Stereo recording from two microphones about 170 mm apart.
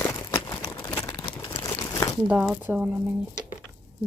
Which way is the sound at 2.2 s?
5° right (ahead or behind).